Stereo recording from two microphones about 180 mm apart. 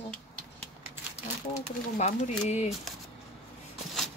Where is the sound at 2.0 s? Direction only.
40° left (ahead or behind).